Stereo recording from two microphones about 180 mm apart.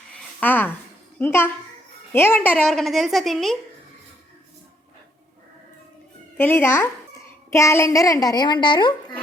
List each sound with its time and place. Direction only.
0.3 s a child's voice: 10° left (ahead or behind)
6.3 s a child's voice: 10° left (ahead or behind)